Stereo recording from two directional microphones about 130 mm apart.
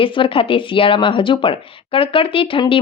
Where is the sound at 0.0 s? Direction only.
40° left (ahead or behind).